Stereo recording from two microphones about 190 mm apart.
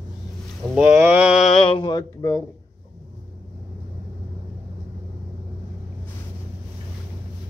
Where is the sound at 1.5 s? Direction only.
30° left (ahead or behind).